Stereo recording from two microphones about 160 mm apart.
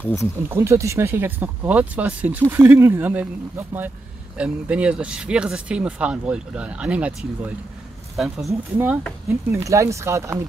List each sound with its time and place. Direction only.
0.0 s speech: 20° left (ahead or behind)
0.5 s speech: 15° right (ahead or behind)